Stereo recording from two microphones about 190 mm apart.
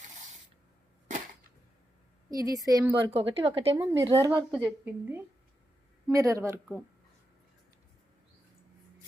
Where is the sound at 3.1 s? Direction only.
30° right (ahead or behind).